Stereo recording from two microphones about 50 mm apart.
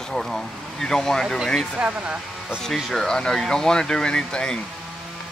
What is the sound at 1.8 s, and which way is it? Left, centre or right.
Speech, right.